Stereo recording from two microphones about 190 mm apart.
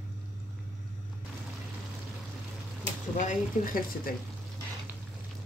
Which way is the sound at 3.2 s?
45° left (ahead or behind).